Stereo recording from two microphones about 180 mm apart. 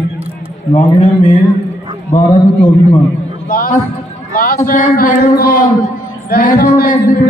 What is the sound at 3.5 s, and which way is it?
A man's voice, 50° left (ahead or behind).